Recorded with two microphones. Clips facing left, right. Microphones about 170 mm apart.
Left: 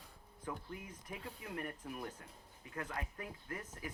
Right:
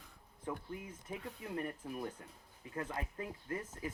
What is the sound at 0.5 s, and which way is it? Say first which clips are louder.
Speech: right 3 dB; 25° right (ahead or behind).